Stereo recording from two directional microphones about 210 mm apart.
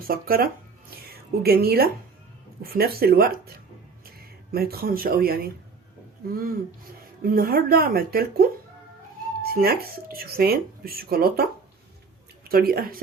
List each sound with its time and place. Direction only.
0.1 s speech: 45° right (ahead or behind)
12.5 s speech: 45° right (ahead or behind)